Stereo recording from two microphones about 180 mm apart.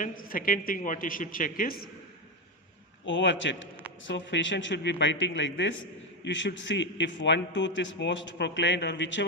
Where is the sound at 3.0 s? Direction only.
90° left.